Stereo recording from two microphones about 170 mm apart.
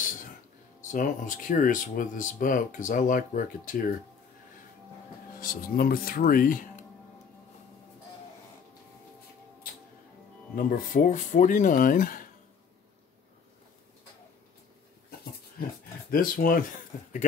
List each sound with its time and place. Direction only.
0.7 s speech: 50° left (ahead or behind)
5.3 s speech: 60° left (ahead or behind)
10.5 s speech: 55° left (ahead or behind)
16.1 s speech: 55° left (ahead or behind)